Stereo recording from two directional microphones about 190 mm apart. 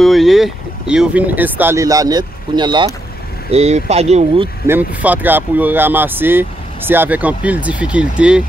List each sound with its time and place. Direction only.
0.0 s speech: centre (ahead or behind); by 2.9 s 25° right (ahead or behind)
3.5 s speech: 35° right (ahead or behind)
4.6 s speech: 10° right (ahead or behind)